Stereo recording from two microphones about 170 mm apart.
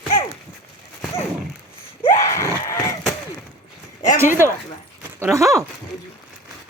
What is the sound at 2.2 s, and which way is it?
Screaming, 15° left (ahead or behind).